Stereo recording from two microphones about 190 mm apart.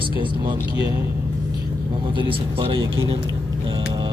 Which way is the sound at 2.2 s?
30° right (ahead or behind).